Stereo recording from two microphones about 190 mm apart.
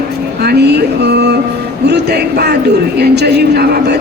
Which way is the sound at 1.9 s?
60° right (ahead or behind).